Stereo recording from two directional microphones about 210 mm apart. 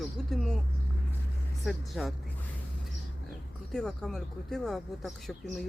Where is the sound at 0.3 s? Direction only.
Centre (ahead or behind).